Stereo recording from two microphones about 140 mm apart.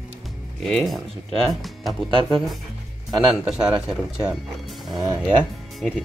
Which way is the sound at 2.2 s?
Centre (ahead or behind).